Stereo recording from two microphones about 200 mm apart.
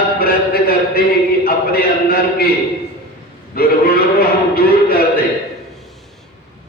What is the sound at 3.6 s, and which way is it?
A man's voice, 45° left (ahead or behind).